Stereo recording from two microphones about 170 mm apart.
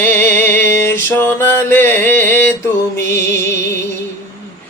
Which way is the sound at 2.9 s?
15° left (ahead or behind).